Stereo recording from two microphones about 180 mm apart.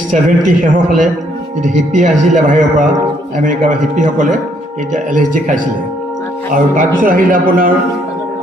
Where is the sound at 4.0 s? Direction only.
45° right (ahead or behind).